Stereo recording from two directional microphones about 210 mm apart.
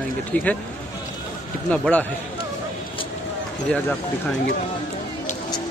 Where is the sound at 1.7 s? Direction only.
5° left (ahead or behind).